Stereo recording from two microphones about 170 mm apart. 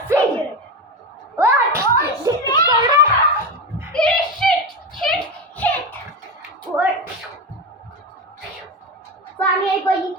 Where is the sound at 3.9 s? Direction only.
5° left (ahead or behind).